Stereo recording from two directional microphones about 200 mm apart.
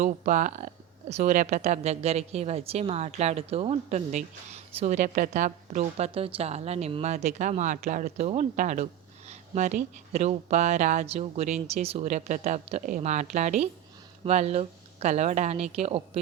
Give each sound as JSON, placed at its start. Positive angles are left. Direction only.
{"t": 0.0, "sound": "a woman's voice", "side_deg": -40}